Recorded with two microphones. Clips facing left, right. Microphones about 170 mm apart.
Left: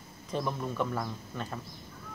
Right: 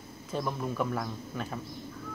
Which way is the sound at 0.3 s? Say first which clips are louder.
Even; centre (ahead or behind).